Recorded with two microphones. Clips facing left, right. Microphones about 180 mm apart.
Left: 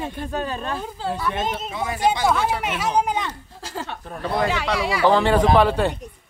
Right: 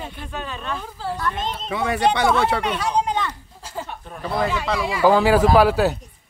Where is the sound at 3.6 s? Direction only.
85° left.